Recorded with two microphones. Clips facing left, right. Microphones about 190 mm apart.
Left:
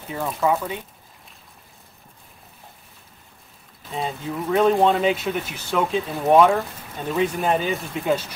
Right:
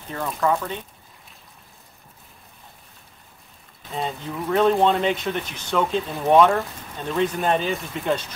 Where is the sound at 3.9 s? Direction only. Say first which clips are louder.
Left 1 dB; centre (ahead or behind).